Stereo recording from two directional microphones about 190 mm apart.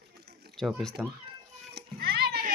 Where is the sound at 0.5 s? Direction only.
Centre (ahead or behind).